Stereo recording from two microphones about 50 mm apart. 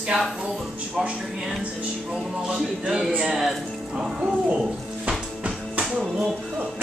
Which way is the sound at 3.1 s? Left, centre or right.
Centre.